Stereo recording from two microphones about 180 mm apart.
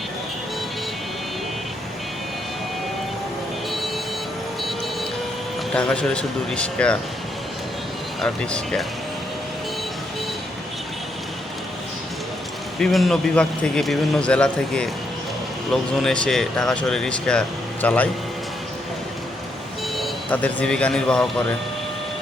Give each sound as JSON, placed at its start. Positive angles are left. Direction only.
{"t": 5.7, "sound": "speech", "side_deg": 5}
{"t": 8.2, "sound": "speech", "side_deg": 5}
{"t": 12.8, "sound": "speech", "side_deg": 0}
{"t": 20.0, "sound": "speech", "side_deg": 10}